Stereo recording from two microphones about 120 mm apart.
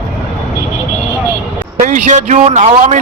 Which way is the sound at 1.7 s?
70° right (ahead or behind).